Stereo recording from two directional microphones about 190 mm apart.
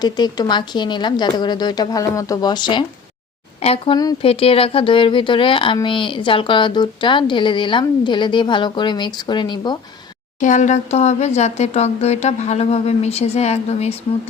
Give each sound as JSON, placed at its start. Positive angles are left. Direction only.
{"t": 0.0, "sound": "a woman's voice", "side_deg": 20}
{"t": 10.4, "sound": "speech", "side_deg": 40}